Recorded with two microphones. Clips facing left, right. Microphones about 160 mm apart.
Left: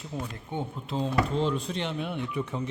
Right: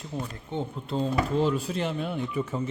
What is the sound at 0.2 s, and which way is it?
A man's voice, 5° left (ahead or behind).